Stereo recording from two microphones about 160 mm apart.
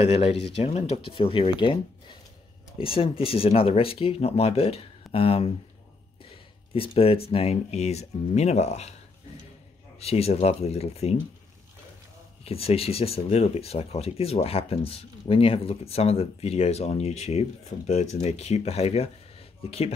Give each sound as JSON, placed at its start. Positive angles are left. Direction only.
{"t": 0.0, "sound": "speech", "side_deg": 40}
{"t": 6.7, "sound": "speech", "side_deg": 35}
{"t": 9.9, "sound": "speech", "side_deg": 40}
{"t": 12.4, "sound": "speech", "side_deg": 40}
{"t": 17.7, "sound": "speech", "side_deg": 55}
{"t": 18.2, "sound": "speech", "side_deg": 40}